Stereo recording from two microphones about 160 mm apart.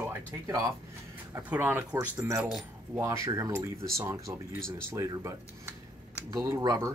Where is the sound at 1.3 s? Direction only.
15° right (ahead or behind).